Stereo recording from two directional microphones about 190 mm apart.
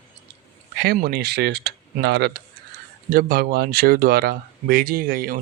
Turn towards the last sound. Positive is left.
turn(degrees=-50)  # may be behind; listen again after turning